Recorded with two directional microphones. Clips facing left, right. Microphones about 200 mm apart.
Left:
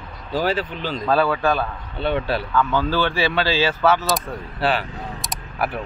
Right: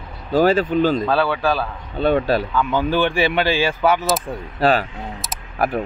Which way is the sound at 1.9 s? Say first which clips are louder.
Right 5 dB; 45° right (ahead or behind).